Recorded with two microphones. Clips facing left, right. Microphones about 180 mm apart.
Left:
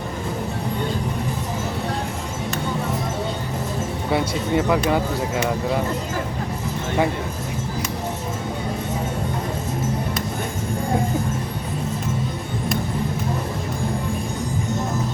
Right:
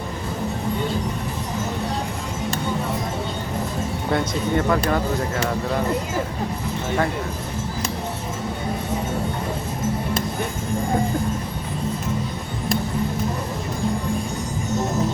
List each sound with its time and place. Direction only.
4.1 s speech: 10° left (ahead or behind)